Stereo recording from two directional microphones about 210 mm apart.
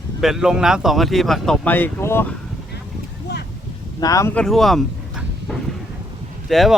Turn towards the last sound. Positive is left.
turn(degrees=0)  # may be behind; listen again after turning